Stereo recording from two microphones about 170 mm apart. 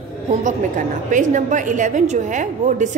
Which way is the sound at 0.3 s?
45° right (ahead or behind).